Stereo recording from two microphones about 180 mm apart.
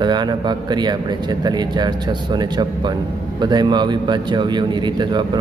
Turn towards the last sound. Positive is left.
turn(degrees=-25)  # may be behind; listen again after turning